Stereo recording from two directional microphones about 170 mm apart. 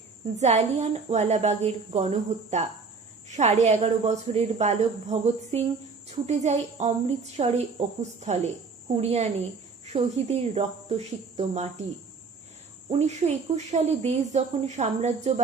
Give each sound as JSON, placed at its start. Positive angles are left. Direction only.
{"t": 0.3, "sound": "a woman's voice", "side_deg": -40}
{"t": 9.0, "sound": "a woman's voice", "side_deg": -40}
{"t": 12.9, "sound": "a woman's voice", "side_deg": -40}